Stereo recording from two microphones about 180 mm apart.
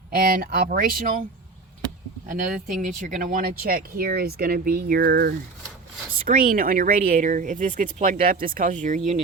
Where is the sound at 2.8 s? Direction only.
45° right (ahead or behind).